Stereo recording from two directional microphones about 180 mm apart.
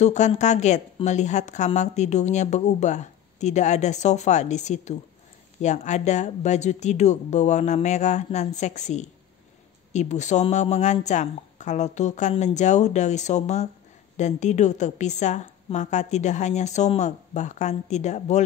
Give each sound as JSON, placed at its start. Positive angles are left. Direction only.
{"t": 0.0, "sound": "a woman's voice", "side_deg": 40}